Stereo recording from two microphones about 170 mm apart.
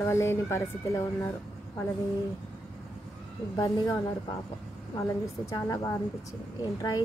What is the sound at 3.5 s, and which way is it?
Speech, 20° left (ahead or behind).